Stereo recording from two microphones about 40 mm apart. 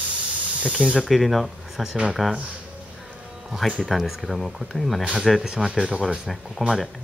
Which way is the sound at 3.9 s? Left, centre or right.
Centre.